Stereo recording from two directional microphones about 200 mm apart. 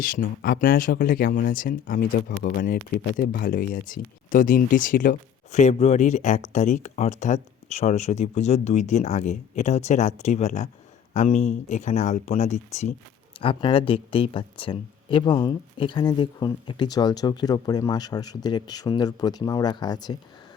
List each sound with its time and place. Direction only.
0.0 s speech: 45° left (ahead or behind)
13.4 s speech: 25° left (ahead or behind)